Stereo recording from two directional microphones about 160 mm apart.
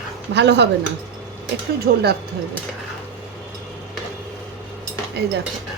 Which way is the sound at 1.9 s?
75° right (ahead or behind).